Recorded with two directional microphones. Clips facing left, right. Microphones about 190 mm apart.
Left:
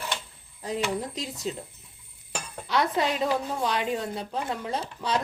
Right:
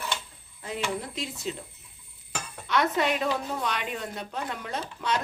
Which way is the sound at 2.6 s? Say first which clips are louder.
Even; 30° left (ahead or behind).